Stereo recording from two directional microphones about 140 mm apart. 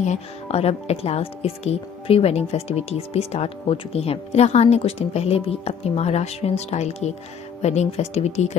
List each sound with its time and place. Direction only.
0.0 s speech: 50° left (ahead or behind)